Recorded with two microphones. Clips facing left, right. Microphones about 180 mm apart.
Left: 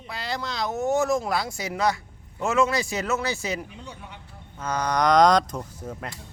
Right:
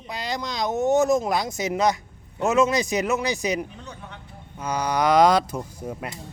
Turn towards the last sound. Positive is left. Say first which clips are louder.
# right 3 dB
turn(degrees=-10)  # may be behind; listen again after turning